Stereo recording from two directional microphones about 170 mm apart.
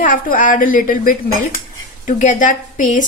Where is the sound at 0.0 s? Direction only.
55° left (ahead or behind).